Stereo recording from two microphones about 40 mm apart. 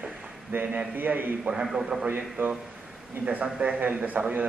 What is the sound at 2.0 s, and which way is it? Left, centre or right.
Speech, right.